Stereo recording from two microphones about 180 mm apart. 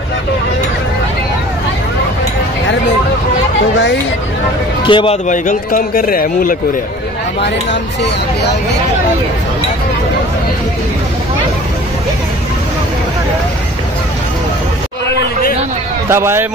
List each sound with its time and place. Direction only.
3.7 s speech: 80° left
4.8 s a man's voice: 30° left (ahead or behind)
5.3 s speech: 50° left (ahead or behind)
16.1 s a man's voice: 15° right (ahead or behind)